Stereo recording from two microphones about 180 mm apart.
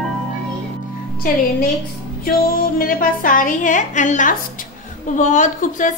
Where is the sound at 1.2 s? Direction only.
50° left (ahead or behind).